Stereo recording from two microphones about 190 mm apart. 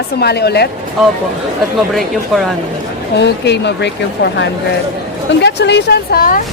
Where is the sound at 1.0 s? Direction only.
Centre (ahead or behind).